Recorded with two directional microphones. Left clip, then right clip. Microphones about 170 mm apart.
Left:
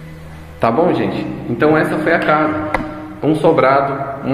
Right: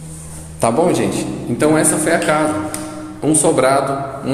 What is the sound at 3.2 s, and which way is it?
Speech, centre (ahead or behind).